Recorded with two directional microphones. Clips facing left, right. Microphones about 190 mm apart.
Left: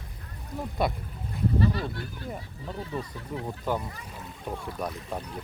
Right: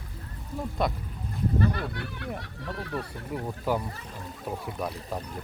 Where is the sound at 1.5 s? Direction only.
55° right (ahead or behind); by 2.9 s 75° right (ahead or behind).